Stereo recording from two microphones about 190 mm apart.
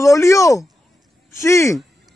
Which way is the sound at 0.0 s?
15° left (ahead or behind).